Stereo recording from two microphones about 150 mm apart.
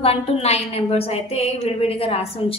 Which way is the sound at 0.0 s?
40° left (ahead or behind).